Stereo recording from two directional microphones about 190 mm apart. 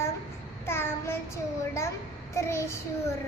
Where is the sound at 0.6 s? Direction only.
15° left (ahead or behind).